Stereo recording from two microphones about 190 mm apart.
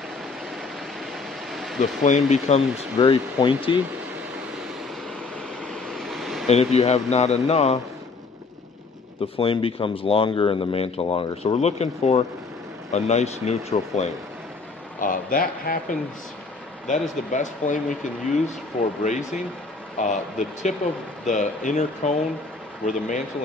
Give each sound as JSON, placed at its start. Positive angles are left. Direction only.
{"t": 1.1, "sound": "a sound", "side_deg": 0}
{"t": 2.0, "sound": "speech", "side_deg": 40}
{"t": 5.7, "sound": "vehicle", "side_deg": 0}
{"t": 6.4, "sound": "speech", "side_deg": 35}
{"t": 9.4, "sound": "speech", "side_deg": 30}
{"t": 15.0, "sound": "speech", "side_deg": 45}